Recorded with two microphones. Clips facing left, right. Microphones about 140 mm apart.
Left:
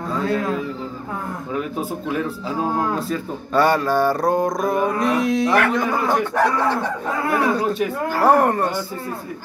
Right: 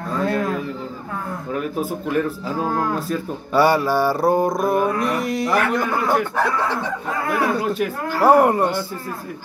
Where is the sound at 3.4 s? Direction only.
5° right (ahead or behind).